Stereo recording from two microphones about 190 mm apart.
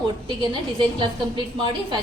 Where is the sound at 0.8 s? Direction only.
25° right (ahead or behind).